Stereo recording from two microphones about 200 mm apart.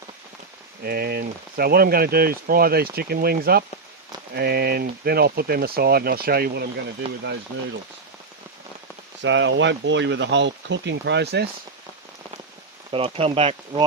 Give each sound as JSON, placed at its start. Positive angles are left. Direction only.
{"t": 0.9, "sound": "speech", "side_deg": -50}
{"t": 9.2, "sound": "speech", "side_deg": -65}
{"t": 12.9, "sound": "speech", "side_deg": -30}